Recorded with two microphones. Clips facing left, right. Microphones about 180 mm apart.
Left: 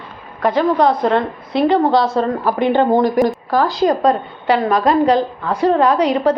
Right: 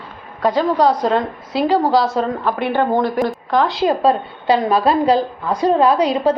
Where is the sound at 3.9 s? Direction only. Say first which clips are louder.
Even; 5° right (ahead or behind).